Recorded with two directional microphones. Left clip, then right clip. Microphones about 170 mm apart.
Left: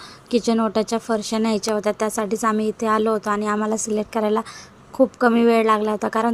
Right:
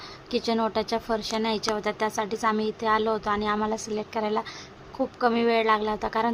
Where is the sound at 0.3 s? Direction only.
25° left (ahead or behind).